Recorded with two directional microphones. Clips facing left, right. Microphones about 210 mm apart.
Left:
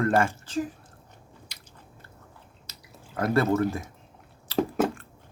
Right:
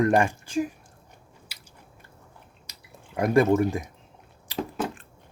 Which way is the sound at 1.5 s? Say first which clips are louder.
Even; 5° right (ahead or behind).